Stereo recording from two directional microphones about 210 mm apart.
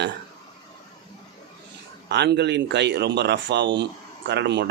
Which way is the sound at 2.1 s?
55° right (ahead or behind).